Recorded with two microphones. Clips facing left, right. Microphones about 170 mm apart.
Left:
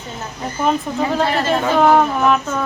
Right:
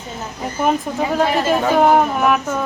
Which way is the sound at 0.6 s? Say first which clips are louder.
Even; 10° right (ahead or behind).